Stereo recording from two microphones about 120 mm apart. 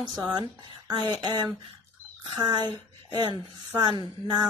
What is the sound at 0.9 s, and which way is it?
Speech, 40° right (ahead or behind).